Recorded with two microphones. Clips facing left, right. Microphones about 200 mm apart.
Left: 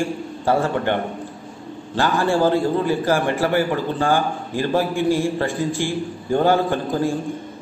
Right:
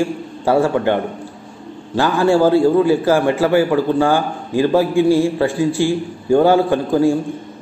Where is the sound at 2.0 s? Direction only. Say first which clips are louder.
Right 5 dB; 15° right (ahead or behind).